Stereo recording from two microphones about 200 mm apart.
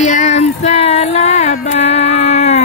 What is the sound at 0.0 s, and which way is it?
Female singing, 35° left (ahead or behind).